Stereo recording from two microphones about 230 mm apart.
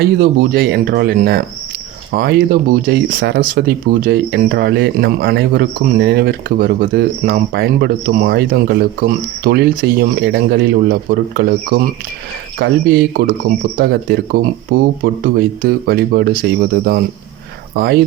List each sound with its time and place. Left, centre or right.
0.0 s speech: right
15.2 s speech: right